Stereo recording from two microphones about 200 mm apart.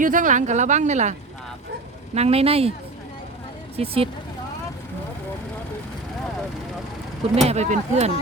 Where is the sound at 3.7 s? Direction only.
30° right (ahead or behind).